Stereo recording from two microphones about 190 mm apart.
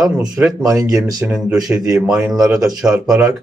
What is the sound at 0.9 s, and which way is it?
Speech, 20° right (ahead or behind).